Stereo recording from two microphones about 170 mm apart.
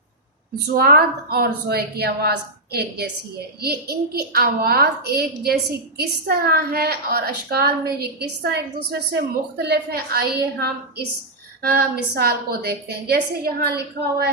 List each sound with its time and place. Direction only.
0.7 s a child's voice: 60° right (ahead or behind)